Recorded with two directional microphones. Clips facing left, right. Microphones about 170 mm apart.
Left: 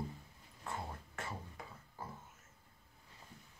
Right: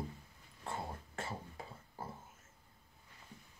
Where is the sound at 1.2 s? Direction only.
30° right (ahead or behind).